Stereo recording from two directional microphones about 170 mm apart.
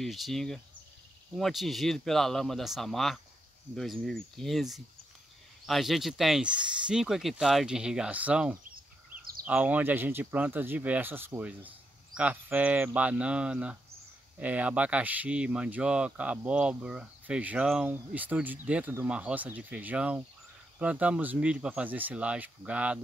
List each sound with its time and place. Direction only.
0.0 s speech: centre (ahead or behind)